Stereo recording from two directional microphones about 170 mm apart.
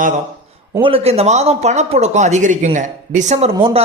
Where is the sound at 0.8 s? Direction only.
35° right (ahead or behind).